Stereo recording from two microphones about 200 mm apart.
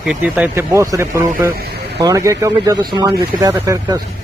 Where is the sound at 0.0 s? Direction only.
5° right (ahead or behind).